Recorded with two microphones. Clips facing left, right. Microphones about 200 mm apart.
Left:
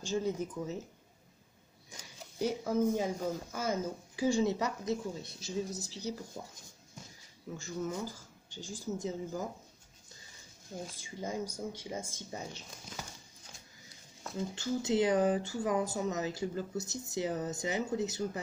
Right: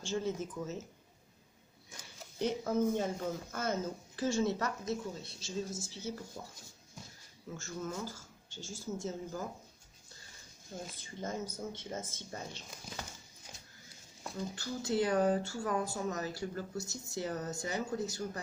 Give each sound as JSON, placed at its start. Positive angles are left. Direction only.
{"t": 0.0, "sound": "speech", "side_deg": 15}
{"t": 1.9, "sound": "speech", "side_deg": 10}
{"t": 7.5, "sound": "speech", "side_deg": 15}
{"t": 10.9, "sound": "speech", "side_deg": 10}
{"t": 14.3, "sound": "speech", "side_deg": 20}